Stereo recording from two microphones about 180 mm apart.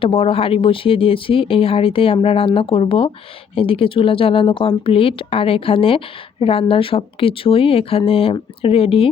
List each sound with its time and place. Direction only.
0.0 s speech: 30° left (ahead or behind)